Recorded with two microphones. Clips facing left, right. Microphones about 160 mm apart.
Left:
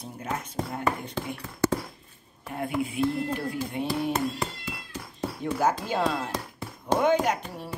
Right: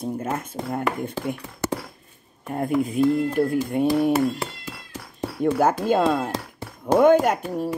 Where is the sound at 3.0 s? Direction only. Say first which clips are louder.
Right 7 dB; 40° right (ahead or behind).